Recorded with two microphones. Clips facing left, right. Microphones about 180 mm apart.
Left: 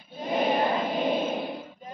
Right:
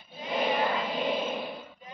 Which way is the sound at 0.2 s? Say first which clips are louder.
Left 3 dB; 45° left (ahead or behind).